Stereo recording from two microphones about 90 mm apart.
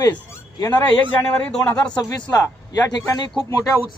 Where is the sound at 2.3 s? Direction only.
35° left (ahead or behind).